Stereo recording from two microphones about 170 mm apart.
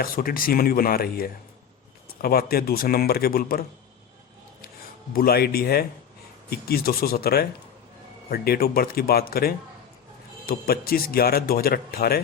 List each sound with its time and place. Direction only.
0.0 s speech: 60° left (ahead or behind)
5.1 s speech: 65° left (ahead or behind)